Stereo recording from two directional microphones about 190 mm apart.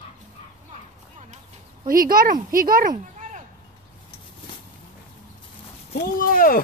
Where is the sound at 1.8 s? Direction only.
50° right (ahead or behind).